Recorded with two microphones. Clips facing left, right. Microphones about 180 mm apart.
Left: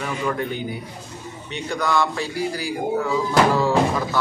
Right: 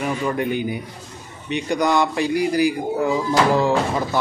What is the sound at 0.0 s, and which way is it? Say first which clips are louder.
A man's voice: right 3 dB; 15° right (ahead or behind).